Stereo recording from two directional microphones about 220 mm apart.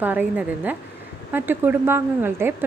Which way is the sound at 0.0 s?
10° right (ahead or behind).